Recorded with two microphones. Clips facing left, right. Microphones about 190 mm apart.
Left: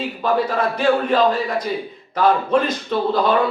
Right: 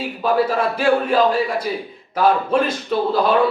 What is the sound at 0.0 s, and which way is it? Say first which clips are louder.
Speech: right 1 dB; 10° right (ahead or behind).